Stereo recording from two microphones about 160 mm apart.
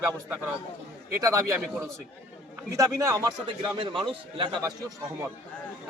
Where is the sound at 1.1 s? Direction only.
20° right (ahead or behind).